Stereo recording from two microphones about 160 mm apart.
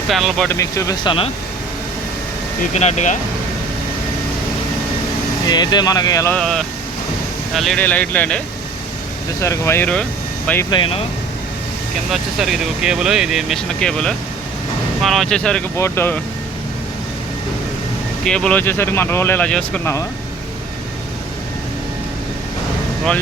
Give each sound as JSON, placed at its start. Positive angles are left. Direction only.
{"t": 0.1, "sound": "speech", "side_deg": 0}
{"t": 0.4, "sound": "speech", "side_deg": 20}
{"t": 2.6, "sound": "speech", "side_deg": 45}
{"t": 5.5, "sound": "speech", "side_deg": 25}
{"t": 6.3, "sound": "speech", "side_deg": 5}
{"t": 9.4, "sound": "speech", "side_deg": 15}
{"t": 10.7, "sound": "speech", "side_deg": 35}
{"t": 12.1, "sound": "speech", "side_deg": 0}
{"t": 15.7, "sound": "speech", "side_deg": 15}
{"t": 18.3, "sound": "speech", "side_deg": 5}